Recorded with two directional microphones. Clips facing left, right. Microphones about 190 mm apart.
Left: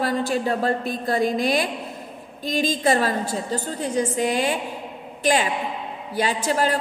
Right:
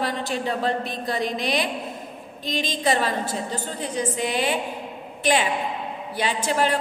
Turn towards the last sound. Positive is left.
turn(degrees=40)  # may be behind; listen again after turning